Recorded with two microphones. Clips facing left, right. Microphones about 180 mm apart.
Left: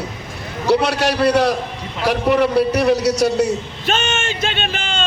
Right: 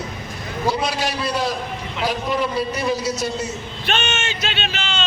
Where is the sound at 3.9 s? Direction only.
45° left (ahead or behind).